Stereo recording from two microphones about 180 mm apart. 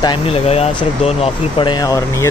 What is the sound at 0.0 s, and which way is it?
Speech, 30° left (ahead or behind).